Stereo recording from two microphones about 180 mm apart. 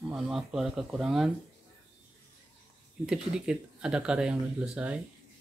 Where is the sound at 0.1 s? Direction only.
Centre (ahead or behind).